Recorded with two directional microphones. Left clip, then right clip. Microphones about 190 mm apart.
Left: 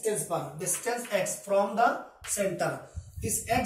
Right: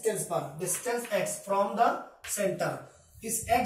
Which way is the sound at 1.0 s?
25° left (ahead or behind).